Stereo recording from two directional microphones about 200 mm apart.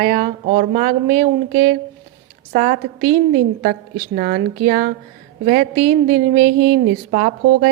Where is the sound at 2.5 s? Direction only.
40° right (ahead or behind).